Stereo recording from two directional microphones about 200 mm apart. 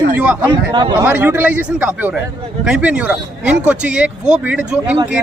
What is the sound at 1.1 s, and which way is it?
A man's voice, 10° right (ahead or behind).